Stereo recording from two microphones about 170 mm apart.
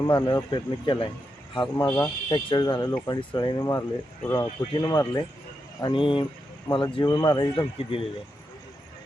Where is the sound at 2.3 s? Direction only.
25° left (ahead or behind).